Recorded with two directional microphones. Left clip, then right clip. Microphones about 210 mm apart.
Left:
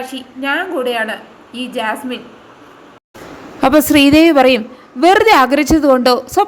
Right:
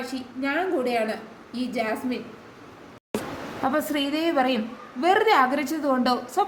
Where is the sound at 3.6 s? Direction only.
45° left (ahead or behind).